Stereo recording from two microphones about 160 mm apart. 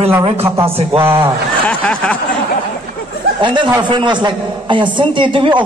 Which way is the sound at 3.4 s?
30° right (ahead or behind).